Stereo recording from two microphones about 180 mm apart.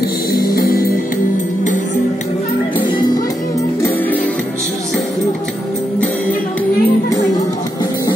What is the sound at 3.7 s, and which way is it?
Music, 10° left (ahead or behind).